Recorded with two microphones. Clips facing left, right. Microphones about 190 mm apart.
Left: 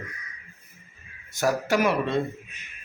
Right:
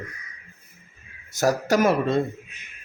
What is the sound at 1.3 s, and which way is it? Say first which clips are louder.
Speech: right 3 dB; 40° right (ahead or behind).